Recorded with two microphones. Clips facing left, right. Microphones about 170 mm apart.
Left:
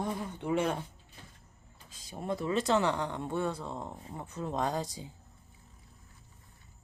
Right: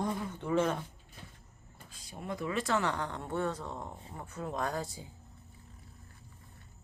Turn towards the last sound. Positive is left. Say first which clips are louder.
# left 3 dB
turn(degrees=20)  # may be behind; listen again after turning